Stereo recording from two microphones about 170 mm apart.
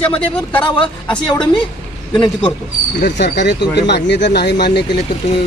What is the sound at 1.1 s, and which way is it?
Speech, 25° left (ahead or behind).